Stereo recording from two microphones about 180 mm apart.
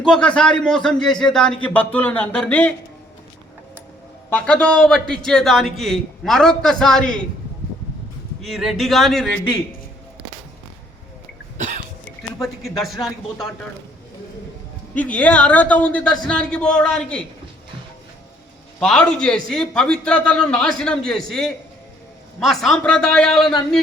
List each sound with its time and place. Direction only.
0.0 s a man's voice: 5° left (ahead or behind)
4.3 s a man's voice: 5° left (ahead or behind)
8.4 s a man's voice: centre (ahead or behind)
11.5 s cough: 40° right (ahead or behind)
12.4 s a man's voice: centre (ahead or behind)
14.9 s a man's voice: 10° left (ahead or behind)
18.8 s a man's voice: 5° left (ahead or behind)